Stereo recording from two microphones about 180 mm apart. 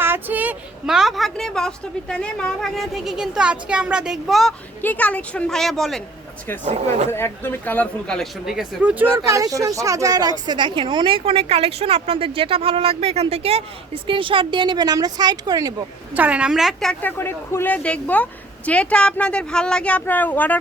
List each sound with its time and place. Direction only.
0.0 s a woman's voice: 10° right (ahead or behind)
7.1 s a woman's voice: 15° left (ahead or behind); by 15.7 s 20° right (ahead or behind)
16.1 s speech: 10° right (ahead or behind); by 20.6 s 10° left (ahead or behind)